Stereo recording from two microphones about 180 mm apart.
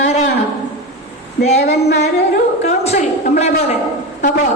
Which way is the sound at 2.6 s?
35° left (ahead or behind).